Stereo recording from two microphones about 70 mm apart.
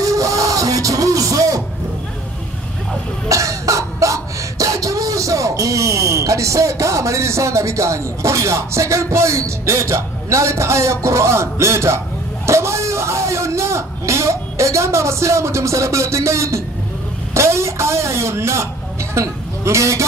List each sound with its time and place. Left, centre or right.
0.0 s music: right
3.3 s cough: right
12.4 s a sound: right